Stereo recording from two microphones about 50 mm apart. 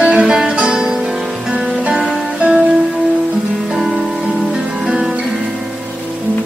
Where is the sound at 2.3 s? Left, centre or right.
Right.